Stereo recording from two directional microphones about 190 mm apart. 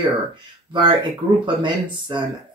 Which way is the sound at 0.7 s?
25° right (ahead or behind).